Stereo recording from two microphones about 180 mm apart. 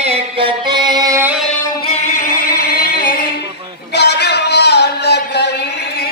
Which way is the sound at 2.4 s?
60° left (ahead or behind).